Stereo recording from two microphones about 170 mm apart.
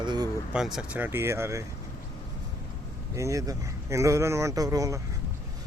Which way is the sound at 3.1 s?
20° right (ahead or behind).